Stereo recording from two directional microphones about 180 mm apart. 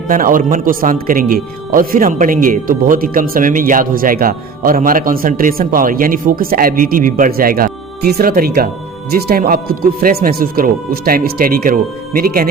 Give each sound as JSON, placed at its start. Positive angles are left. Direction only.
{"t": 0.1, "sound": "a man's voice", "side_deg": -50}